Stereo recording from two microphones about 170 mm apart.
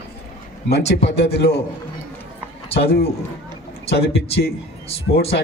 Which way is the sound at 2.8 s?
70° left (ahead or behind).